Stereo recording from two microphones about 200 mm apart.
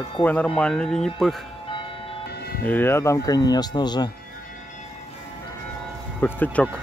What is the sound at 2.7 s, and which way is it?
Speech, 10° left (ahead or behind).